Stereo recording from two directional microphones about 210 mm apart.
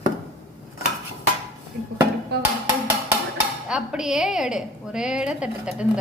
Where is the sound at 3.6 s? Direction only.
5° right (ahead or behind).